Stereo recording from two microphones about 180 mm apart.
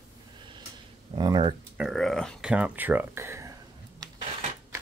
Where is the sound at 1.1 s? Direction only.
25° right (ahead or behind).